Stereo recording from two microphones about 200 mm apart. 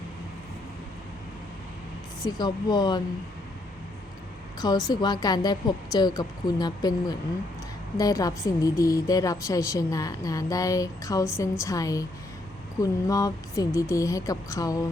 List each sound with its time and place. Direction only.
2.2 s speech: 20° left (ahead or behind)
4.6 s a woman's voice: 20° left (ahead or behind)